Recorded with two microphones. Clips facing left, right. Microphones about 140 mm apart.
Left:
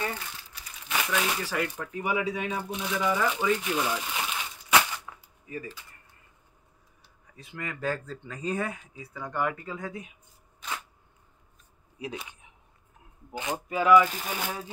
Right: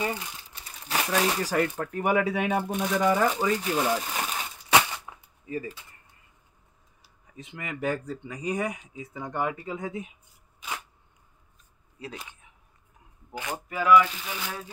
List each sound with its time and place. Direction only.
0.0 s crumpling: 15° right (ahead or behind)
0.5 s speech: 30° right (ahead or behind)
4.7 s cap gun: 20° right (ahead or behind)
7.3 s speech: 20° right (ahead or behind)
12.0 s speech: 15° left (ahead or behind)
13.3 s speech: 20° left (ahead or behind)
14.0 s speech: 45° left (ahead or behind)